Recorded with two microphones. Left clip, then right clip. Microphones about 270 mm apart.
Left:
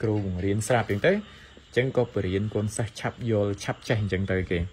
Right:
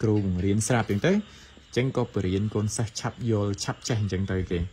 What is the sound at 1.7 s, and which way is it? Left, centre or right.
A man's voice, right.